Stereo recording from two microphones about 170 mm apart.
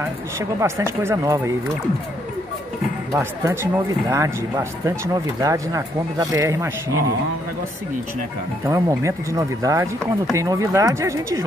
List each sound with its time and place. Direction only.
0.0 s speech: 15° right (ahead or behind)
3.1 s speech: 15° right (ahead or behind)
8.6 s speech: 20° right (ahead or behind)